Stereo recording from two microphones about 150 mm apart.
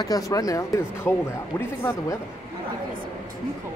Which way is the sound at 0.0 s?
25° left (ahead or behind).